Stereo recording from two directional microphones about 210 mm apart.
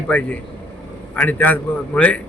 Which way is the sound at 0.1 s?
5° left (ahead or behind).